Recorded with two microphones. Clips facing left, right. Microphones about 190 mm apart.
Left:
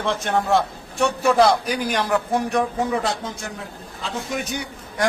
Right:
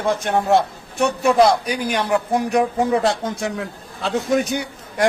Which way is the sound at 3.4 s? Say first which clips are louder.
Right 8 dB; 75° right (ahead or behind).